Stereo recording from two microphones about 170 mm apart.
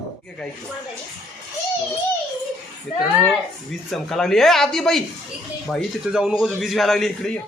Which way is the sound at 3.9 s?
5° left (ahead or behind).